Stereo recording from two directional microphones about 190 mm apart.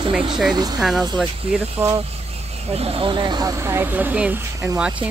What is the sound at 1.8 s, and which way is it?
Speech, 15° right (ahead or behind).